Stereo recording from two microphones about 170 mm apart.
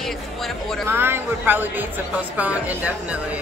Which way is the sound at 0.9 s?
10° right (ahead or behind).